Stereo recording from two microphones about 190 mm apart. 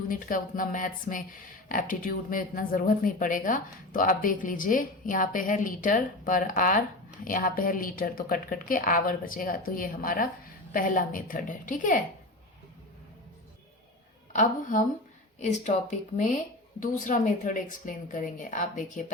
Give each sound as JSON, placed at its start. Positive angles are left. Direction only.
{"t": 0.1, "sound": "speech", "side_deg": 45}
{"t": 15.4, "sound": "speech", "side_deg": 35}